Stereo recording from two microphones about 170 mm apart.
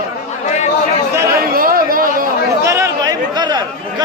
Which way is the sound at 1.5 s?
55° right (ahead or behind).